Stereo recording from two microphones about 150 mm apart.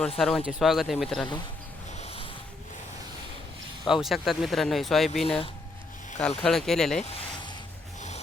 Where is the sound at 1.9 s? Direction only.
40° left (ahead or behind).